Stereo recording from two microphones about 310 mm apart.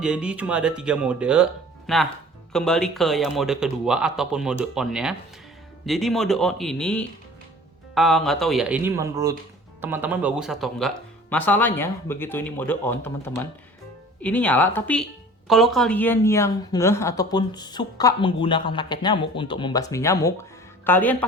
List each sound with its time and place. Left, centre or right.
0.0 s a woman's voice: centre